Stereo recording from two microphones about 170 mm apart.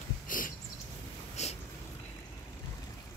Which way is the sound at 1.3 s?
40° left (ahead or behind).